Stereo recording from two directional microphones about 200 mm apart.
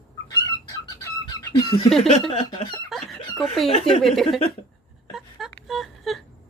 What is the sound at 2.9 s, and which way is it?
Chicken, centre (ahead or behind).